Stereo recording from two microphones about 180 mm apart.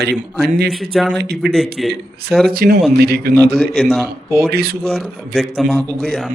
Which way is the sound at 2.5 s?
55° right (ahead or behind).